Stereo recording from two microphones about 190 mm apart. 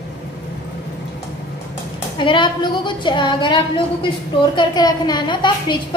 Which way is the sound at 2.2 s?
25° left (ahead or behind).